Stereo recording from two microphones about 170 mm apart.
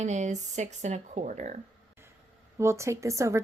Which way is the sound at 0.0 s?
45° right (ahead or behind).